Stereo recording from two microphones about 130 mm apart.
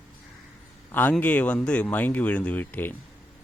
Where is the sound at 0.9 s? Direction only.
15° left (ahead or behind).